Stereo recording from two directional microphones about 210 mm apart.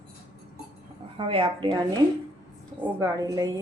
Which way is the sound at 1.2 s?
25° right (ahead or behind).